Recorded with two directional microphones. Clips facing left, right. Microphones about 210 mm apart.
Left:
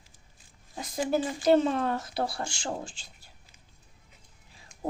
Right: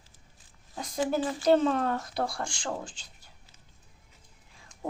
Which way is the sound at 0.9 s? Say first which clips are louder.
Even; 15° left (ahead or behind).